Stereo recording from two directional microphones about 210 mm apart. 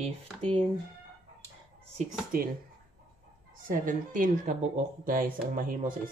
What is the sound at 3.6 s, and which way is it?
Speech, 40° right (ahead or behind).